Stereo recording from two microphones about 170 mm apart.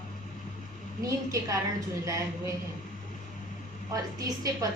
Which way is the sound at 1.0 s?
20° right (ahead or behind).